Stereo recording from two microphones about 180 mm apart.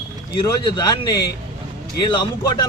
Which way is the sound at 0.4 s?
20° left (ahead or behind).